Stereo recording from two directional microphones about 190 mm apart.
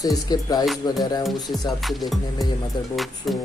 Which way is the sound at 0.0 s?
20° left (ahead or behind).